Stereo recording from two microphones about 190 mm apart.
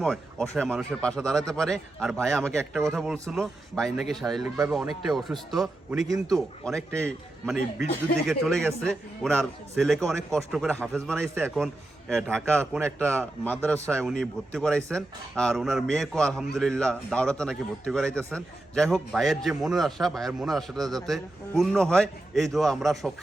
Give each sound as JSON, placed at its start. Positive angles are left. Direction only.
{"t": 0.0, "sound": "speech", "side_deg": 0}